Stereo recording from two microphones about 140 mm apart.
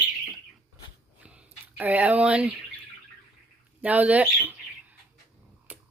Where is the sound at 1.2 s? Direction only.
10° right (ahead or behind).